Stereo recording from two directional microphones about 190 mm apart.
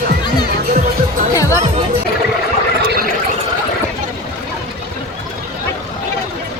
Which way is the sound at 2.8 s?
55° right (ahead or behind).